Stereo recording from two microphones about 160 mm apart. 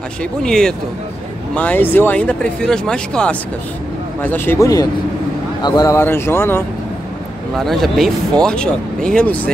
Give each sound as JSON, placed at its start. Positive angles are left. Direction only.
{"t": 0.2, "sound": "speech", "side_deg": 5}
{"t": 7.5, "sound": "speech", "side_deg": 0}